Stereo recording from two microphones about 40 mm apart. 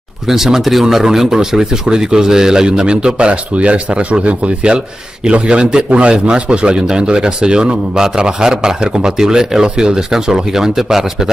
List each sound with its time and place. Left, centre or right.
0.3 s a man's voice: centre